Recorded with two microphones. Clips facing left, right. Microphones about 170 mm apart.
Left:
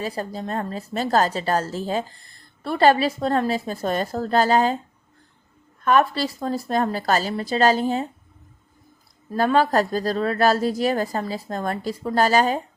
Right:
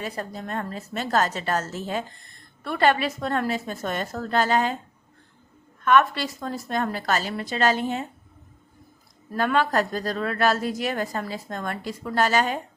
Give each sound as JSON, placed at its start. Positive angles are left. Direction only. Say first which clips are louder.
{"t": 0.0, "sound": "a woman's voice", "louder": "left 4 dB", "side_deg": 30}
{"t": 5.8, "sound": "a woman's voice", "louder": "left 1 dB", "side_deg": 35}
{"t": 9.3, "sound": "a woman's voice", "louder": "left 4 dB", "side_deg": 35}